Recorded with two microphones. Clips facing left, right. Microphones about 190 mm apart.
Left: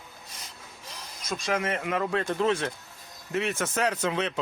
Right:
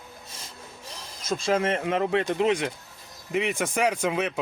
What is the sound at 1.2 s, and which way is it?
A man's voice, 25° right (ahead or behind).